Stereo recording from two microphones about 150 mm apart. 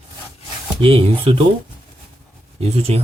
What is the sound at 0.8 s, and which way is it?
Speech, 40° right (ahead or behind).